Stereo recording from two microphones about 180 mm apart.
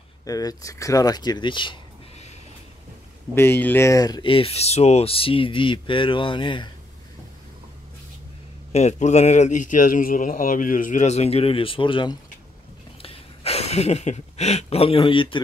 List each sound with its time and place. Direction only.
0.2 s speech: 20° left (ahead or behind)
3.3 s speech: 10° left (ahead or behind); by 6.7 s 25° left (ahead or behind)
8.7 s speech: 40° left (ahead or behind)